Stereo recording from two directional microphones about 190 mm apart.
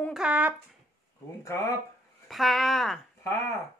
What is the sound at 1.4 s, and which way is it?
Speech, 15° left (ahead or behind).